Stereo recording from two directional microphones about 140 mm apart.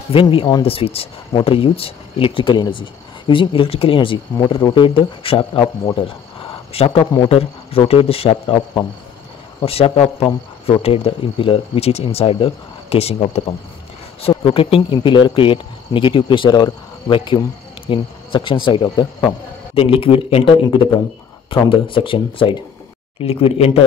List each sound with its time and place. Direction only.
0.1 s speech: 40° left (ahead or behind)
5.9 s a sound: 40° left (ahead or behind)
7.2 s speech: 45° left (ahead or behind)
9.6 s speech: 40° left (ahead or behind)